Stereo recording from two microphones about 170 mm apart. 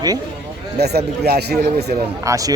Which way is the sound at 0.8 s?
70° right (ahead or behind).